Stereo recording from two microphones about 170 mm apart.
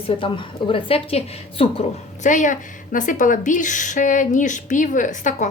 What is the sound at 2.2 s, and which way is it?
A woman's voice, 50° left (ahead or behind).